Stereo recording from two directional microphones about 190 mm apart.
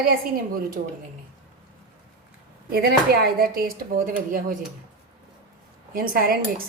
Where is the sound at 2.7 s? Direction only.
55° right (ahead or behind).